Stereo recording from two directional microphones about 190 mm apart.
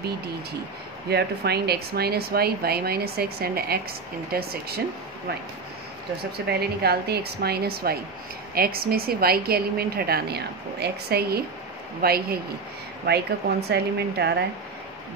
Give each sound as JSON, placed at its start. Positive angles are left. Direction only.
{"t": 1.1, "sound": "a woman's voice", "side_deg": -55}
{"t": 6.4, "sound": "a woman's voice", "side_deg": -55}